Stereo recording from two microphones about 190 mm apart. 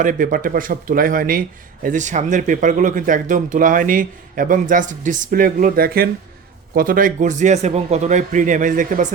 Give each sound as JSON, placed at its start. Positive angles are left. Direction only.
{"t": 0.0, "sound": "a man's voice", "side_deg": -45}